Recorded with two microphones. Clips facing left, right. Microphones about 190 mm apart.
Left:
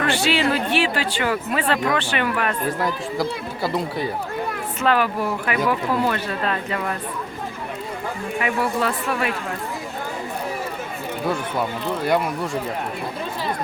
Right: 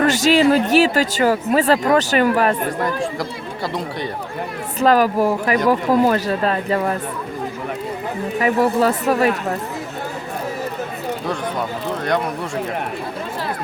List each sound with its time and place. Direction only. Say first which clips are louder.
0.0 s speech: right 6 dB; 40° right (ahead or behind)
2.8 s speech: right 1 dB; 5° left (ahead or behind)
4.8 s speech: right 6 dB; 40° right (ahead or behind)
8.4 s speech: right 7 dB; 40° right (ahead or behind)